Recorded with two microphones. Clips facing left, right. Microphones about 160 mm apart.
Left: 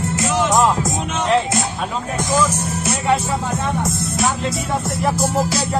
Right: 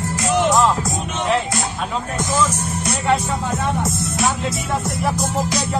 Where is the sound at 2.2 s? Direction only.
10° left (ahead or behind).